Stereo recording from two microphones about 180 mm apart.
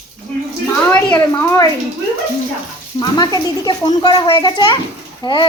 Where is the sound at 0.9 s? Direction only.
10° left (ahead or behind).